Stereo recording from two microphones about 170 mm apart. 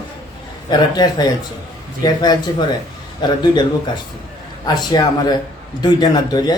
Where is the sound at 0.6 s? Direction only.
25° left (ahead or behind).